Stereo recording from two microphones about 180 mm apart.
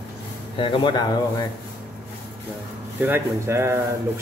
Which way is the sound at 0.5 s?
30° left (ahead or behind).